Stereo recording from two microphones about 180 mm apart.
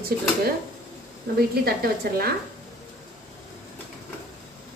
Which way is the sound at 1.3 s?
55° right (ahead or behind).